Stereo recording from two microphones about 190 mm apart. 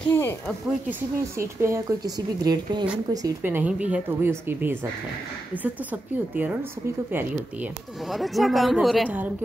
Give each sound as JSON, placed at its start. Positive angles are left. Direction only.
{"t": 0.1, "sound": "speech", "side_deg": 10}
{"t": 0.8, "sound": "a woman's voice", "side_deg": -15}